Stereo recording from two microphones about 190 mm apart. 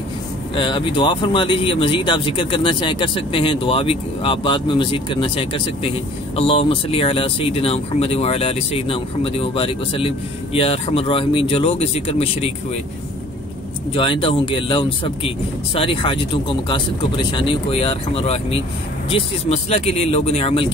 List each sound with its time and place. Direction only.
0.6 s speech: 25° left (ahead or behind)
13.9 s speech: 25° left (ahead or behind)